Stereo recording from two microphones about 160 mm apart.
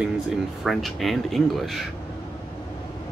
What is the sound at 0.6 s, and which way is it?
Speech, centre (ahead or behind).